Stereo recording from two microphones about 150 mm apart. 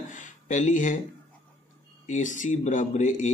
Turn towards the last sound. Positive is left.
turn(degrees=55)  # may be behind; listen again after turning